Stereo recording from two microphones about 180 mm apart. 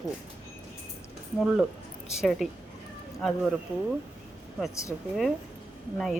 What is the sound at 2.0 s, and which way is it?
Speech, centre (ahead or behind).